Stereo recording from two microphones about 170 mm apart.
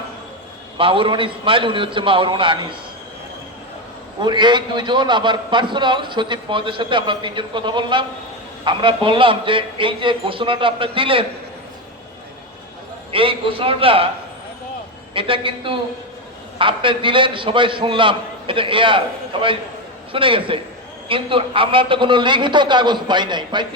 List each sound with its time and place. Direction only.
0.8 s a man's voice: 30° right (ahead or behind)
4.2 s a man's voice: 25° right (ahead or behind)
13.1 s a man's voice: 30° right (ahead or behind)
15.1 s a man's voice: 30° right (ahead or behind)